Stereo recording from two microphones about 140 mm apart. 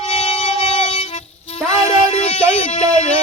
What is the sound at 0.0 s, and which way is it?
Music, 50° left (ahead or behind).